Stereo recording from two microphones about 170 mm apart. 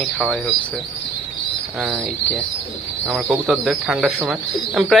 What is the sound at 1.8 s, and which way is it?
Speech, centre (ahead or behind).